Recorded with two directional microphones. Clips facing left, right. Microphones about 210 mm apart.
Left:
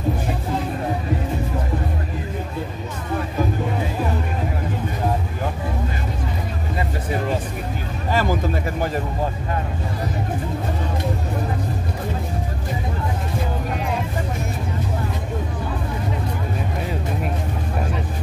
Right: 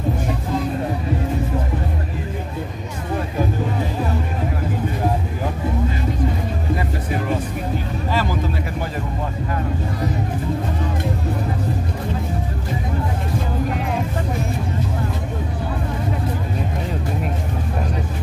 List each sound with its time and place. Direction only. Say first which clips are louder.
8.1 s speech: left 3 dB; 50° left (ahead or behind)